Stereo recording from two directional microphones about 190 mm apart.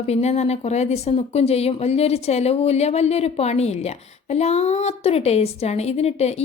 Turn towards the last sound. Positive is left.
turn(degrees=35)  # may be behind; listen again after turning